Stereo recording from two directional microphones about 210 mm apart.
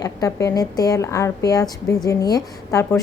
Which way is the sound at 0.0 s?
15° left (ahead or behind).